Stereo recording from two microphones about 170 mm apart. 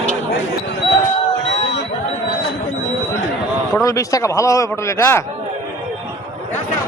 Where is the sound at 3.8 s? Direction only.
20° left (ahead or behind).